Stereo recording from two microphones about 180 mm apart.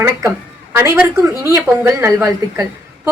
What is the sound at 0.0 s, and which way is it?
A woman's voice, 15° right (ahead or behind).